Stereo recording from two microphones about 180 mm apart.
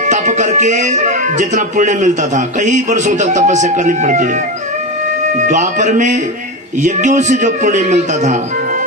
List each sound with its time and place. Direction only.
0.1 s speech: 45° right (ahead or behind)
5.5 s speech: 45° right (ahead or behind)